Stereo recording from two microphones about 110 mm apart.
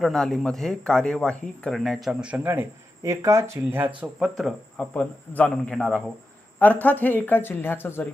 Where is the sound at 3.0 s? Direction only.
25° right (ahead or behind); by 4.5 s 5° right (ahead or behind).